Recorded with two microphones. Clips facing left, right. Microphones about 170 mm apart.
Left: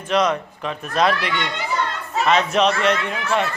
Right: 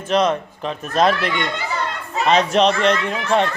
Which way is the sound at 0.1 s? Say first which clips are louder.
Right 2 dB; 30° right (ahead or behind).